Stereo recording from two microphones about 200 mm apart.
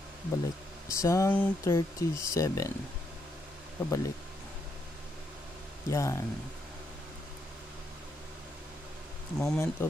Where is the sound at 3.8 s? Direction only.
15° left (ahead or behind).